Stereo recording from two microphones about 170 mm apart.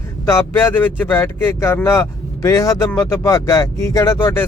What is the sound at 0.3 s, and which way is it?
Speech, 15° left (ahead or behind).